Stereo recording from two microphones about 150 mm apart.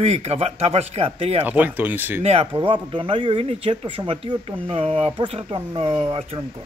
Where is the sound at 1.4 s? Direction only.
10° right (ahead or behind).